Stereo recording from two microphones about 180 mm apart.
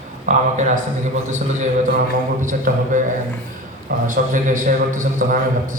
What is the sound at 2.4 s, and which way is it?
Speech, 45° right (ahead or behind).